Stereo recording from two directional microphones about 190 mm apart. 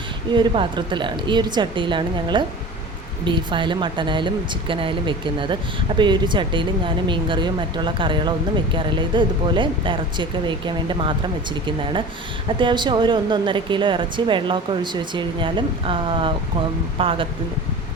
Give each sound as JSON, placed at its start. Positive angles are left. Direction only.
{"t": 0.3, "sound": "a woman's voice", "side_deg": -25}